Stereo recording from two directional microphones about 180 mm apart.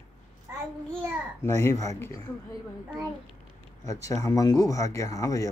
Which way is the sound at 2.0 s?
20° left (ahead or behind).